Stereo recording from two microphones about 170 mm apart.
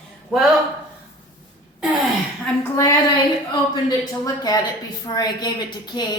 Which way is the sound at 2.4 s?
15° left (ahead or behind).